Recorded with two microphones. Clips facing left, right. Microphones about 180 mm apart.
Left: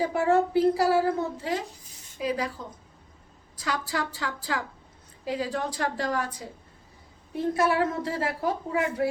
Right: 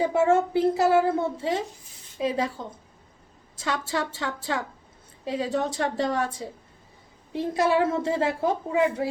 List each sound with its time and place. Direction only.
0.0 s a woman's voice: 25° right (ahead or behind)
3.6 s a woman's voice: 25° right (ahead or behind)